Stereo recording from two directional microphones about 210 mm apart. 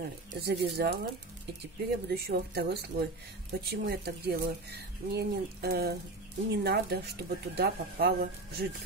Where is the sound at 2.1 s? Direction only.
50° right (ahead or behind).